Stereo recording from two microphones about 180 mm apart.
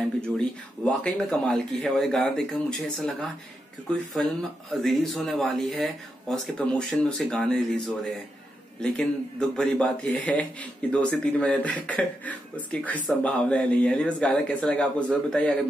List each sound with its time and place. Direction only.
0.4 s speech: 5° left (ahead or behind)